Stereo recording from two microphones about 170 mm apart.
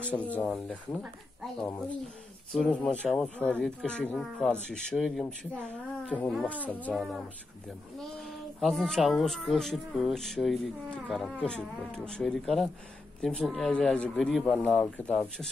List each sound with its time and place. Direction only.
0.0 s speech: 10° left (ahead or behind)
2.5 s speech: 5° left (ahead or behind)